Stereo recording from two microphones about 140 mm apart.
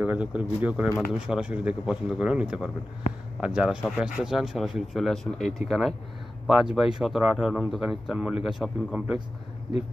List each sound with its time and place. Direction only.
0.0 s speech: 10° right (ahead or behind)